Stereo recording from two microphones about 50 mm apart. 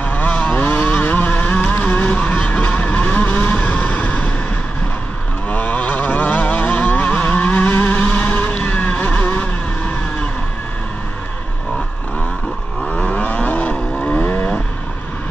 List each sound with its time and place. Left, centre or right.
0.0 s vehicle: left
5.5 s vehicle: left
12.8 s vehicle: left